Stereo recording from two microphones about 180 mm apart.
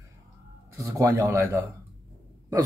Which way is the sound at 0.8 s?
20° right (ahead or behind).